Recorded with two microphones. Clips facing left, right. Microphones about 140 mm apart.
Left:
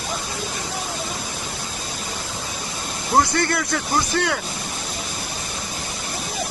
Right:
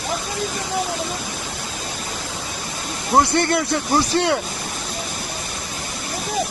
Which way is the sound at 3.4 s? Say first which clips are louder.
Right 3 dB; 25° right (ahead or behind).